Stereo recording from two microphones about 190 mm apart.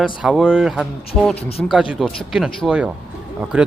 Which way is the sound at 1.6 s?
5° right (ahead or behind).